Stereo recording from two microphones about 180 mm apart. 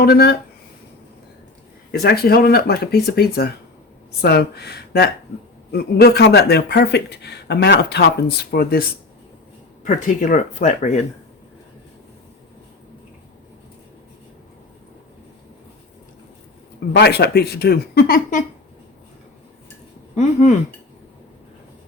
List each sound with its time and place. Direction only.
0.0 s speech: 60° left (ahead or behind)
1.9 s speech: 60° left (ahead or behind)
9.8 s speech: 45° left (ahead or behind)
16.9 s speech: 65° left (ahead or behind)